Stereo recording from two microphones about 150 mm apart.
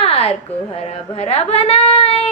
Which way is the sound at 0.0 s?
40° left (ahead or behind).